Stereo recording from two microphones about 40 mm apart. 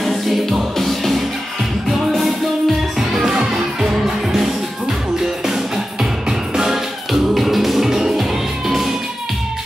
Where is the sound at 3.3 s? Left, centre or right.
Centre.